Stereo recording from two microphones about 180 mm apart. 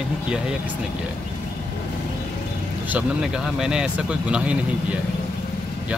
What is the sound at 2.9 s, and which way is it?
Speech, 5° right (ahead or behind).